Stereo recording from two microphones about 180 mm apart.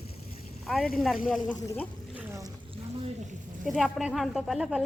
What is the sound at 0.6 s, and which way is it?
Speech, centre (ahead or behind).